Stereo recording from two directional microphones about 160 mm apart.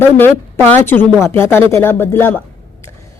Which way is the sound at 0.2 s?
15° left (ahead or behind).